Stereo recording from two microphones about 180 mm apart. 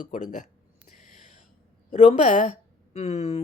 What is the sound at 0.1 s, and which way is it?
Speech, 45° left (ahead or behind).